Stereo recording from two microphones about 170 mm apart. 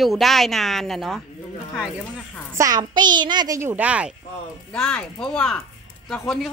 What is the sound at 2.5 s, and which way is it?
A child's voice, 20° right (ahead or behind).